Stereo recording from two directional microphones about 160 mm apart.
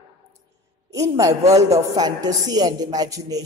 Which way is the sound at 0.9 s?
20° right (ahead or behind).